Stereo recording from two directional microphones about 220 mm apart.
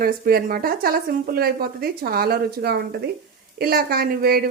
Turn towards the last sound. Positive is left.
turn(degrees=-45)  # may be behind; listen again after turning